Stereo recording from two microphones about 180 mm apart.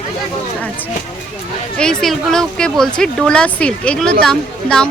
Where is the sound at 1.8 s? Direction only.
5° left (ahead or behind).